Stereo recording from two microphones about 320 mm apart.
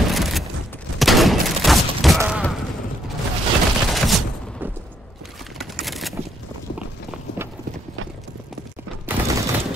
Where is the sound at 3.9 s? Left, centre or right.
Centre.